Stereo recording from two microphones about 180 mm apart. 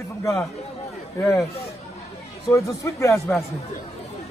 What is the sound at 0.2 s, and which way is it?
Speech, 20° left (ahead or behind).